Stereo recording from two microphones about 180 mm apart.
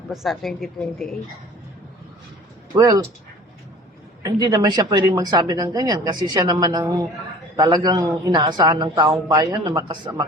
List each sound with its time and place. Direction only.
0.1 s a woman's voice: centre (ahead or behind)
2.7 s speech: 20° right (ahead or behind)
4.2 s speech: 20° right (ahead or behind)